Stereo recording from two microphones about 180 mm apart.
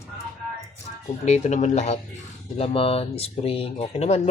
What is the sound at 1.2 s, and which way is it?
Speech, 40° left (ahead or behind).